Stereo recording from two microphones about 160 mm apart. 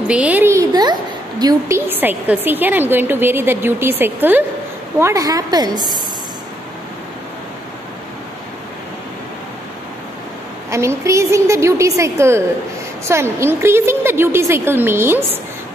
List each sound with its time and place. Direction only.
0.1 s a sound: 10° right (ahead or behind)
1.4 s a woman's voice: 25° right (ahead or behind)
1.9 s a woman's voice: 10° right (ahead or behind)
10.7 s a woman's voice: 20° right (ahead or behind)